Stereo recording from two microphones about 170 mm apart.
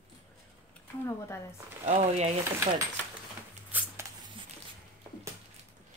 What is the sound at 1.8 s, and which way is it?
Speech, 40° right (ahead or behind).